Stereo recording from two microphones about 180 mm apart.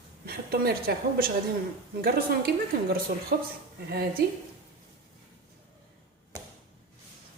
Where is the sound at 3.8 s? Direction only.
60° right (ahead or behind).